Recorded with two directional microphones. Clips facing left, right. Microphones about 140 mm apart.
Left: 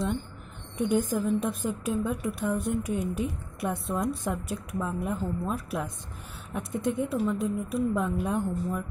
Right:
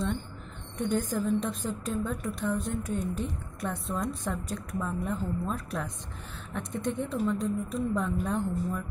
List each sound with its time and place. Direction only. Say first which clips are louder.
0.7 s a woman's voice: left 3 dB; 5° left (ahead or behind)